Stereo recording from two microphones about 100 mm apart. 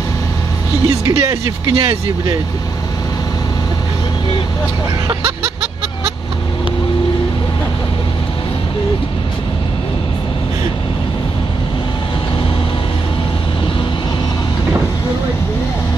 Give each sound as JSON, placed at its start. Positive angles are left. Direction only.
{"t": 0.8, "sound": "speech", "side_deg": -30}